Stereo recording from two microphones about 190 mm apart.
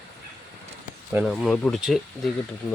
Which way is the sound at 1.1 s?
Centre (ahead or behind).